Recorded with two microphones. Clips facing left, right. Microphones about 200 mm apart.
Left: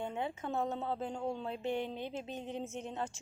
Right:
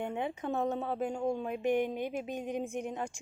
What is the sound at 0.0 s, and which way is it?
A woman's voice, 15° right (ahead or behind).